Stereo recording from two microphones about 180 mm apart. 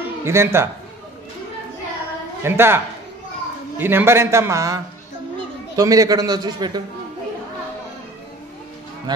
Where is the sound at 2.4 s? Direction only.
15° right (ahead or behind).